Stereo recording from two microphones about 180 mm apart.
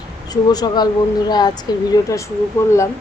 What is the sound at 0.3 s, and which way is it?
A woman's voice, 20° left (ahead or behind).